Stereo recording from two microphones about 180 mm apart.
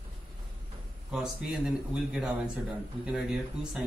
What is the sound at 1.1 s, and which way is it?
Speech, centre (ahead or behind).